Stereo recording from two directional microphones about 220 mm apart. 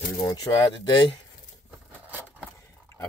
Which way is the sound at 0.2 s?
15° left (ahead or behind).